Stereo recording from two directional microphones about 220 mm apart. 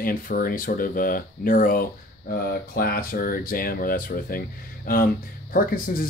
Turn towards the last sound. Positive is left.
turn(degrees=40)  # may be behind; listen again after turning